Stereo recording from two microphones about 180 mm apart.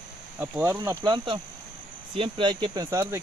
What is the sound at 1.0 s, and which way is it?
Speech, 25° right (ahead or behind).